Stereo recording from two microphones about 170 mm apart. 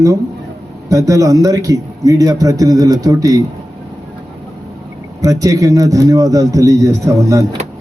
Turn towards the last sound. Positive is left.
turn(degrees=-20)  # may be behind; listen again after turning